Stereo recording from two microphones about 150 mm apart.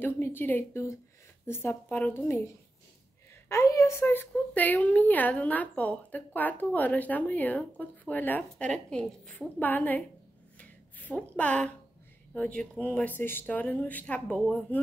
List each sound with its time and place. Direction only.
0.0 s a woman's voice: 15° left (ahead or behind)
10.6 s a sound: 10° left (ahead or behind)
12.4 s a woman's voice: 5° left (ahead or behind)